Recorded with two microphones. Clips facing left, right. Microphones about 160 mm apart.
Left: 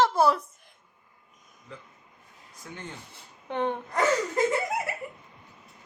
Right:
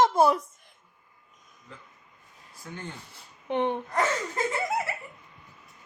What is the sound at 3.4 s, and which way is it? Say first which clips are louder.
Gasp: right 2 dB; 20° right (ahead or behind).